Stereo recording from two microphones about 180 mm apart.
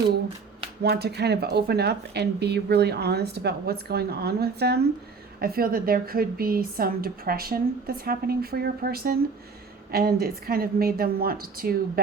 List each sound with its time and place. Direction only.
0.8 s speech: 65° right (ahead or behind)